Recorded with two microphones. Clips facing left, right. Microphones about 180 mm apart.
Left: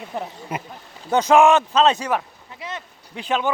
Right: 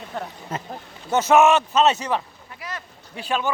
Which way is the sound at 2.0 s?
10° left (ahead or behind).